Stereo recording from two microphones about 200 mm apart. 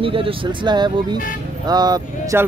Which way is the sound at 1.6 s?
20° right (ahead or behind).